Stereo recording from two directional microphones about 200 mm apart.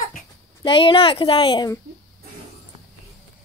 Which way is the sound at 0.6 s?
25° left (ahead or behind).